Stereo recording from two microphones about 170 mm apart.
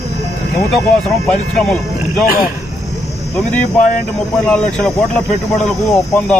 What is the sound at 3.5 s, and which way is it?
Speech, 10° left (ahead or behind).